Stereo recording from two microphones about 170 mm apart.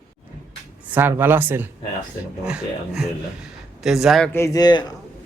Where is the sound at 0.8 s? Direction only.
10° right (ahead or behind).